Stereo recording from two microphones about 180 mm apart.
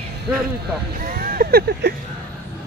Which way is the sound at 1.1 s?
55° right (ahead or behind).